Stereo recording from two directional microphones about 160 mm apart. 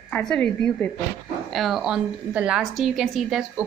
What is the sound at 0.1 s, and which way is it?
A woman's voice, 5° left (ahead or behind).